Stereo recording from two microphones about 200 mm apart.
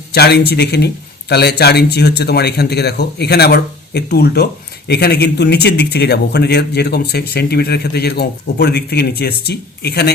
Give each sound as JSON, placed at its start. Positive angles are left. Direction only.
{"t": 0.1, "sound": "speech", "side_deg": 55}